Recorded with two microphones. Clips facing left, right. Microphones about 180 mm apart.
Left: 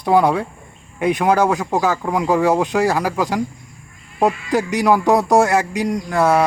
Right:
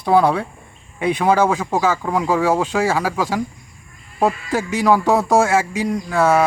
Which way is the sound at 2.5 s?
15° left (ahead or behind).